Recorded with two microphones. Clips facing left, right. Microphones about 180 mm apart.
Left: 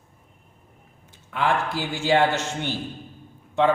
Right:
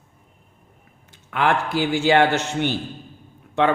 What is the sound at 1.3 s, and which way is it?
Speech, 70° right (ahead or behind).